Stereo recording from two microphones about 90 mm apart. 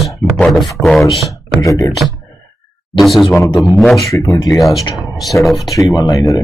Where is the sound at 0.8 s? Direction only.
20° right (ahead or behind).